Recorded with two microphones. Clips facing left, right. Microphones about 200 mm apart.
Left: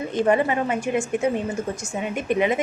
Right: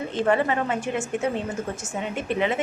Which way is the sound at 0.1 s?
15° left (ahead or behind).